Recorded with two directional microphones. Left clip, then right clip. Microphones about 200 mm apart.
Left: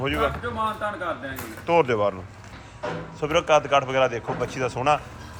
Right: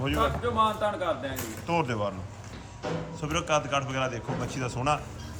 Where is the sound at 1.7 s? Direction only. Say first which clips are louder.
Left 9 dB; 10° right (ahead or behind).